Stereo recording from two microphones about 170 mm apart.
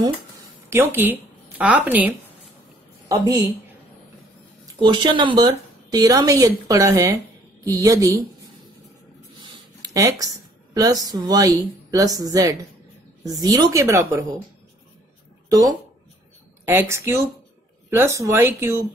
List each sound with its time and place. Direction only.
0.7 s speech: 15° right (ahead or behind)
4.7 s speech: 25° right (ahead or behind)
9.4 s speech: 20° right (ahead or behind)
16.6 s speech: 15° right (ahead or behind)